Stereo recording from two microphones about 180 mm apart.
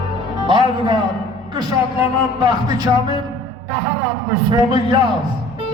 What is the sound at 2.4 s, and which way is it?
Speech, 20° right (ahead or behind).